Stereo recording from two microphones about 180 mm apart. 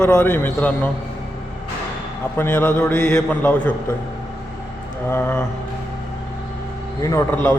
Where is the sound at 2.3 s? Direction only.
10° left (ahead or behind).